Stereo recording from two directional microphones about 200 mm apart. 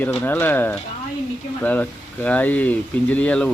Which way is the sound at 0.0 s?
10° left (ahead or behind).